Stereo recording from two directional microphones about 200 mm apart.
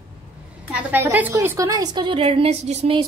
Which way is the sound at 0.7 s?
10° right (ahead or behind).